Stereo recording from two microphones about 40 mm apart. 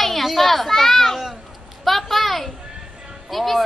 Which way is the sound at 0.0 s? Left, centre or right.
Centre.